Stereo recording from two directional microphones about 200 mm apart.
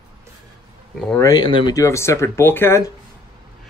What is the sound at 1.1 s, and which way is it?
Speech, 20° left (ahead or behind).